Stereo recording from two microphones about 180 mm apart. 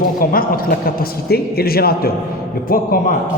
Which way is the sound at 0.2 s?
55° left (ahead or behind).